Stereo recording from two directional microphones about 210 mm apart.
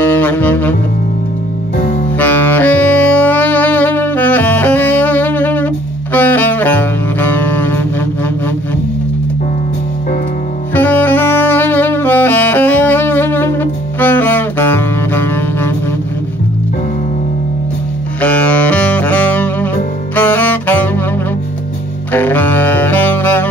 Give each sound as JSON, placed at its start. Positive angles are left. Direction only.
{"t": 0.0, "sound": "saxophone", "side_deg": 10}
{"t": 2.1, "sound": "saxophone", "side_deg": 10}
{"t": 6.1, "sound": "music", "side_deg": 10}
{"t": 10.7, "sound": "saxophone", "side_deg": 10}
{"t": 18.2, "sound": "music", "side_deg": 5}
{"t": 22.1, "sound": "saxophone", "side_deg": 10}